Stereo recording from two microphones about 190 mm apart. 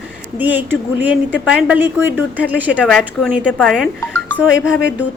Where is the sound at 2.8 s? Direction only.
5° left (ahead or behind).